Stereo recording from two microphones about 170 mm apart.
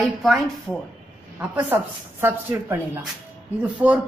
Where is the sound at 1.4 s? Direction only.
10° right (ahead or behind).